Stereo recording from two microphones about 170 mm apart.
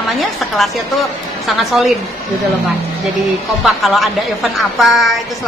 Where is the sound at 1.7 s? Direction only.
Centre (ahead or behind).